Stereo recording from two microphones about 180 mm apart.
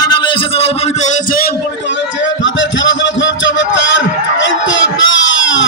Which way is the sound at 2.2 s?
90° left.